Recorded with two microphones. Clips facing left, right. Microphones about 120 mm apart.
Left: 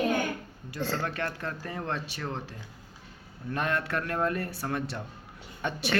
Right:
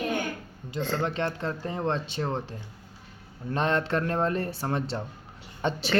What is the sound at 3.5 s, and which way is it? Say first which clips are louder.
Speech: right 4 dB; 25° right (ahead or behind).